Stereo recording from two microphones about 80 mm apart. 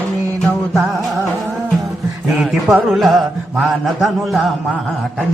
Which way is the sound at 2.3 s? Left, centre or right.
Centre.